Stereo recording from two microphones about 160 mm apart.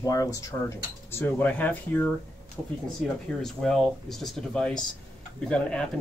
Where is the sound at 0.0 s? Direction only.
20° left (ahead or behind).